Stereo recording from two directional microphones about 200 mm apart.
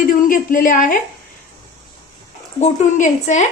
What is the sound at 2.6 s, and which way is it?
Speech, 35° left (ahead or behind).